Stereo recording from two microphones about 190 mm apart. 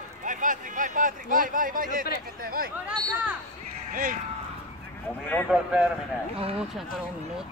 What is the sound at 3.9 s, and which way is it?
Speech, 50° right (ahead or behind).